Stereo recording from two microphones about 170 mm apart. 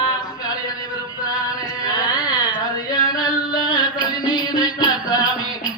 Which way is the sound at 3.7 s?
25° left (ahead or behind).